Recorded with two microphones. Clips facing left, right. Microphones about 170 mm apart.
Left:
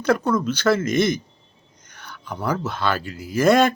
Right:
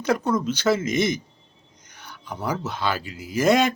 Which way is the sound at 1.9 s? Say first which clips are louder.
Left 2 dB; 15° right (ahead or behind).